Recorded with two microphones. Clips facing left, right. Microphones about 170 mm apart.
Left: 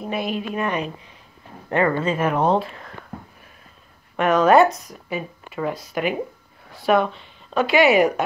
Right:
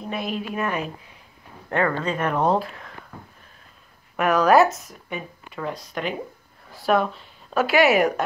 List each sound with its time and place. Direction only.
0.1 s speech: centre (ahead or behind)
4.2 s speech: centre (ahead or behind)